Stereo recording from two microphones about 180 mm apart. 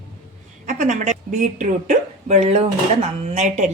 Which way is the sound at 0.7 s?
45° right (ahead or behind).